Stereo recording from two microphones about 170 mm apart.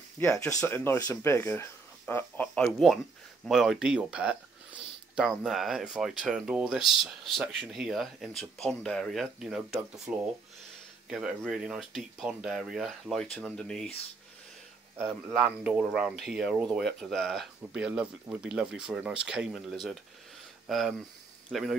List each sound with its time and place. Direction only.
0.2 s speech: 20° left (ahead or behind)
15.0 s speech: 5° right (ahead or behind)